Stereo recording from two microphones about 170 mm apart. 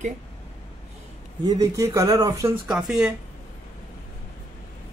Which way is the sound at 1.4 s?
20° right (ahead or behind).